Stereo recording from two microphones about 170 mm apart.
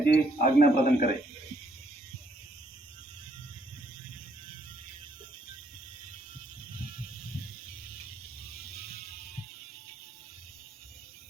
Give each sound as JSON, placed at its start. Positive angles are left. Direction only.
{"t": 0.0, "sound": "a man's voice", "side_deg": 60}